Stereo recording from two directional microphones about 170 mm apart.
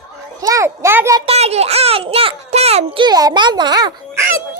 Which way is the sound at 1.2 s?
40° right (ahead or behind).